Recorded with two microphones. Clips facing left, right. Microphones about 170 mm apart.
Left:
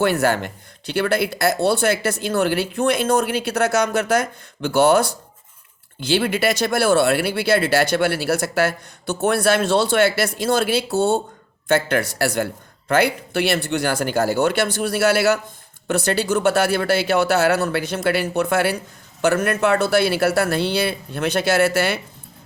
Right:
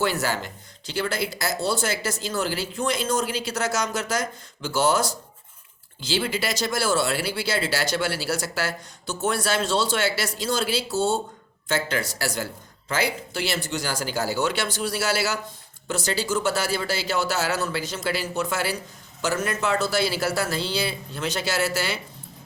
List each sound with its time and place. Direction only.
0.0 s speech: 60° left (ahead or behind)